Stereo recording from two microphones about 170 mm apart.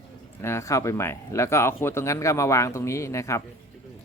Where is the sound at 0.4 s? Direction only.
15° left (ahead or behind).